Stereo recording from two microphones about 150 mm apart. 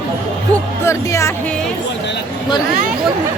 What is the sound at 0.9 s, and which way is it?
Speech, 20° left (ahead or behind).